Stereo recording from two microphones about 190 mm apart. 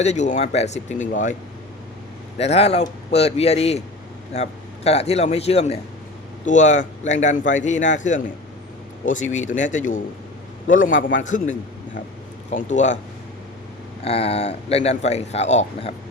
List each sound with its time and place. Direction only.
0.0 s speech: 35° left (ahead or behind)
2.4 s a man's voice: 35° left (ahead or behind)
14.0 s speech: 30° left (ahead or behind)